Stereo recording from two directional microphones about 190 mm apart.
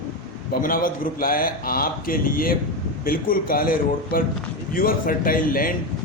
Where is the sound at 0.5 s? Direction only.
50° left (ahead or behind).